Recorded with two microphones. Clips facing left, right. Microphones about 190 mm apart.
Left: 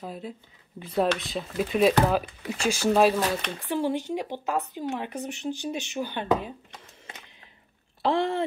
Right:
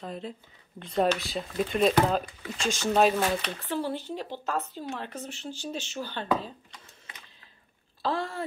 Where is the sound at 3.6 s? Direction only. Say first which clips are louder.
Left 4 dB; 15° left (ahead or behind).